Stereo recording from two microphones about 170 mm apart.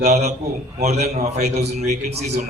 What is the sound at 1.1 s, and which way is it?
Speech, 40° right (ahead or behind).